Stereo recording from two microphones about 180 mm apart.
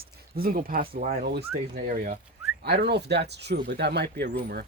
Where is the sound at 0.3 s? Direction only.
55° right (ahead or behind).